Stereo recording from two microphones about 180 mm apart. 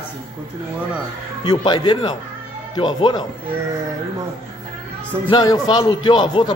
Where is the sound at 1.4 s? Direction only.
25° left (ahead or behind).